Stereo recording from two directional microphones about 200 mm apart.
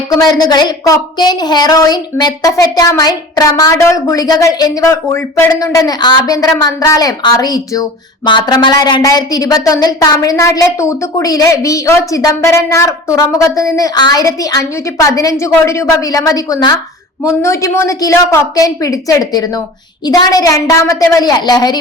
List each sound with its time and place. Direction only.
0.1 s a woman's voice: 20° left (ahead or behind)